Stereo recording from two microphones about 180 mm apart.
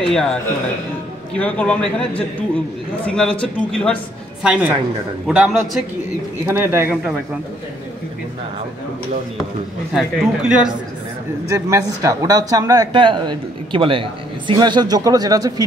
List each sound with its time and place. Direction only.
0.1 s speech: 5° left (ahead or behind)
1.4 s a man's voice: 5° left (ahead or behind); by 7.2 s 10° right (ahead or behind)
9.9 s speech: 5° right (ahead or behind)
11.5 s speech: 15° right (ahead or behind)